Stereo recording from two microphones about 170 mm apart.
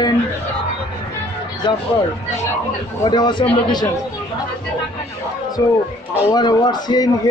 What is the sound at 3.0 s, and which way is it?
Speech, 25° left (ahead or behind).